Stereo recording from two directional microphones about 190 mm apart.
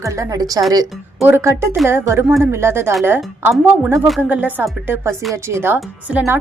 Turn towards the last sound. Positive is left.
turn(degrees=-10)  # may be behind; listen again after turning